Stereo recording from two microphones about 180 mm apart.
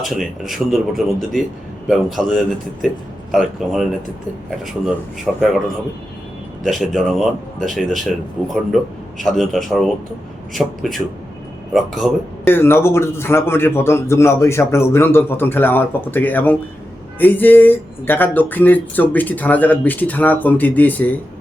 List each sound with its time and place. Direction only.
0.0 s speech: centre (ahead or behind)
5.3 s speech: centre (ahead or behind)
6.6 s speech: centre (ahead or behind)
12.5 s speech: 10° left (ahead or behind)